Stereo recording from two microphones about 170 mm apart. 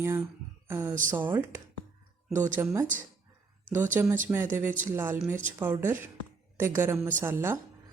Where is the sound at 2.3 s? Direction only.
45° right (ahead or behind).